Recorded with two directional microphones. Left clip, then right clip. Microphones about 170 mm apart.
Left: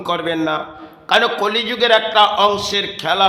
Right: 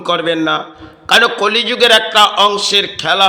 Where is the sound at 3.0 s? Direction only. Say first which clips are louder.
Even; 5° right (ahead or behind).